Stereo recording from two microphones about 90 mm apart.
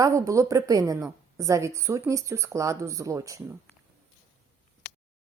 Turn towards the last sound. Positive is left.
turn(degrees=-40)  # may be behind; listen again after turning